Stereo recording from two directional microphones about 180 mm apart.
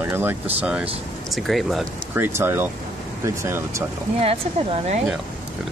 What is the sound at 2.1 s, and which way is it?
Speech, 15° right (ahead or behind).